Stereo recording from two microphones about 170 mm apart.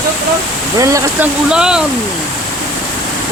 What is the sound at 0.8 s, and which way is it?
Speech, 20° right (ahead or behind).